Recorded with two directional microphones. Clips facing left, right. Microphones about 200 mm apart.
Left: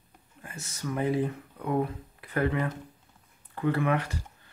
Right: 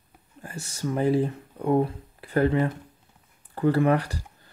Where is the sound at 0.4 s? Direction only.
35° right (ahead or behind).